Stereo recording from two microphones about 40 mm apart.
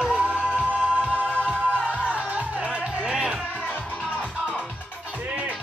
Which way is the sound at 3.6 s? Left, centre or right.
Left.